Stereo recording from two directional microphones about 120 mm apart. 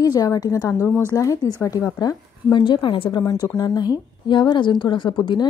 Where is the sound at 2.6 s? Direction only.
45° left (ahead or behind).